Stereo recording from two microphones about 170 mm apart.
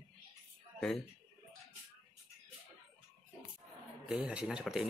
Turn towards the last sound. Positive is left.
turn(degrees=-5)  # may be behind; listen again after turning